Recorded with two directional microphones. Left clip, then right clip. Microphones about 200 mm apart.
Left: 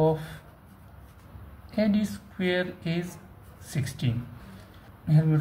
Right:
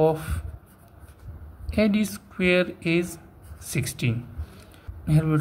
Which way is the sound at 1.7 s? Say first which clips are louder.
Right 4 dB; 40° right (ahead or behind).